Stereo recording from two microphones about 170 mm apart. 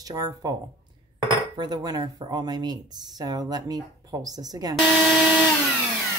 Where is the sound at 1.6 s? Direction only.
20° right (ahead or behind).